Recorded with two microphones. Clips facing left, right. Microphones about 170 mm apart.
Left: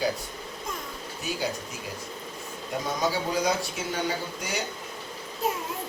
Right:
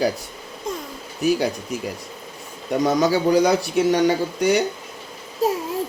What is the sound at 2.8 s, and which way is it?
A man's voice, 80° right.